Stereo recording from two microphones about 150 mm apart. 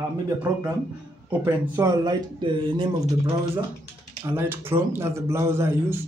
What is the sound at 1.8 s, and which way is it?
Speech, 25° right (ahead or behind).